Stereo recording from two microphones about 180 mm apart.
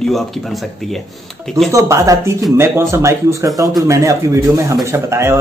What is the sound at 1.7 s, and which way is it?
Speech, 15° right (ahead or behind).